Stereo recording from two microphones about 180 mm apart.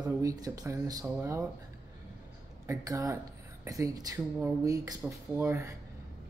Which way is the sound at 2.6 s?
20° right (ahead or behind).